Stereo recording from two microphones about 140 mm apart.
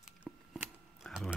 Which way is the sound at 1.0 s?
Centre (ahead or behind).